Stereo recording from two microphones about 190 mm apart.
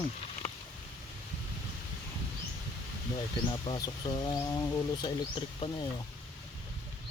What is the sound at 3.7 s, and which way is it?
Speech, 20° left (ahead or behind).